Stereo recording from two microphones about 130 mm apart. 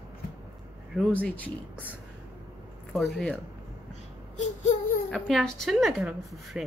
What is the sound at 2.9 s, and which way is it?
Speech, 5° left (ahead or behind).